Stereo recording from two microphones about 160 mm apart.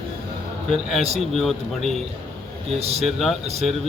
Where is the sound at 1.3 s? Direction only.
Centre (ahead or behind).